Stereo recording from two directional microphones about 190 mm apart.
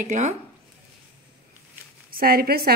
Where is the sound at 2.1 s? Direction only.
50° right (ahead or behind).